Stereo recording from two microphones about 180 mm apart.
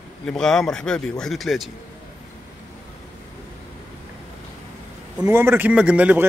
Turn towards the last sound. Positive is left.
turn(degrees=-10)  # may be behind; listen again after turning